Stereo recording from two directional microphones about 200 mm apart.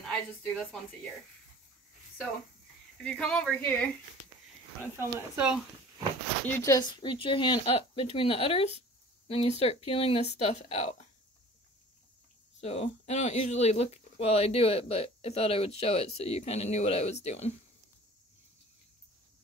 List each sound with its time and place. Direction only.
0.0 s speech: 5° left (ahead or behind)
3.0 s speech: 5° left (ahead or behind)
4.9 s speech: 10° right (ahead or behind)
6.4 s speech: 15° left (ahead or behind); by 11.1 s 30° left (ahead or behind)
12.5 s speech: 30° left (ahead or behind)